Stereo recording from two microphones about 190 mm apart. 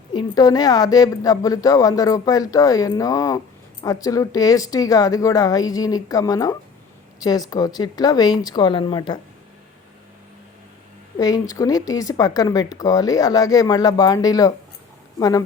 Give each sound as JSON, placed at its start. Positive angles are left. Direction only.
{"t": 0.1, "sound": "a woman's voice", "side_deg": 20}
{"t": 11.2, "sound": "a woman's voice", "side_deg": 20}